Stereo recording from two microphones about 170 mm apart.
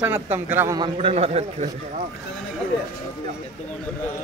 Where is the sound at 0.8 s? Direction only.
30° right (ahead or behind).